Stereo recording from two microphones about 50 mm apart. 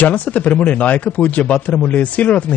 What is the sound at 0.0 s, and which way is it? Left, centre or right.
A man's voice, left.